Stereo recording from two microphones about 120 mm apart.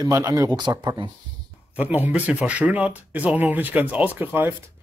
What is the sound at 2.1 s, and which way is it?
Speech, 10° right (ahead or behind).